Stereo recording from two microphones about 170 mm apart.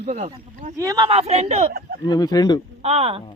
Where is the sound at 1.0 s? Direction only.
35° right (ahead or behind).